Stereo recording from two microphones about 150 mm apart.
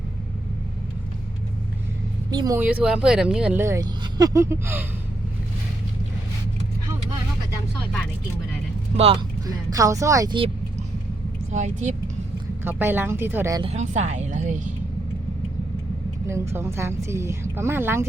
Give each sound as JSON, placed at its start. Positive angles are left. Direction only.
{"t": 2.3, "sound": "speech", "side_deg": -25}
{"t": 2.6, "sound": "speech", "side_deg": -10}
{"t": 9.5, "sound": "speech", "side_deg": -25}
{"t": 11.5, "sound": "speech", "side_deg": -50}
{"t": 12.6, "sound": "speech", "side_deg": -15}
{"t": 13.6, "sound": "speech", "side_deg": -45}
{"t": 16.2, "sound": "speech", "side_deg": -20}